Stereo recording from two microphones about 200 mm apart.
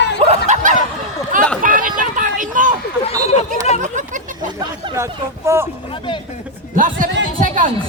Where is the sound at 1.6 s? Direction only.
40° right (ahead or behind).